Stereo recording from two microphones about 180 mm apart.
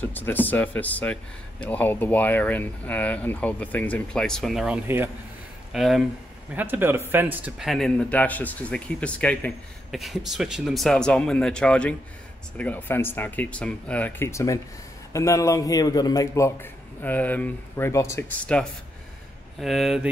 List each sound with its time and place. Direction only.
0.0 s speech: 10° left (ahead or behind)
4.8 s speech: 10° right (ahead or behind)
5.7 s a man's voice: centre (ahead or behind)